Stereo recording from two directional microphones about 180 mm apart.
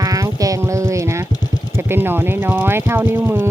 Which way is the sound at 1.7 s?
15° right (ahead or behind).